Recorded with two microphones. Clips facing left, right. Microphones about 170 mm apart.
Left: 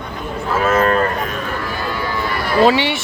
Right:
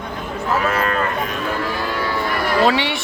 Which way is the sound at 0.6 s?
40° left (ahead or behind).